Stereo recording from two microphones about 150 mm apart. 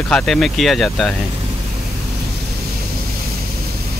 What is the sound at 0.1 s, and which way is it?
Speech, 5° left (ahead or behind).